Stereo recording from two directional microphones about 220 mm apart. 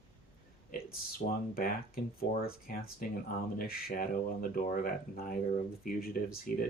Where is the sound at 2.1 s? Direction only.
40° left (ahead or behind).